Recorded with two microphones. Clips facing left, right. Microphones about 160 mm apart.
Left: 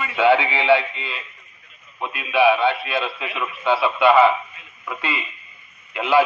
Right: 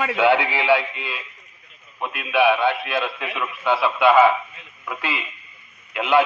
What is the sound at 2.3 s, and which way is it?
A man's voice, centre (ahead or behind).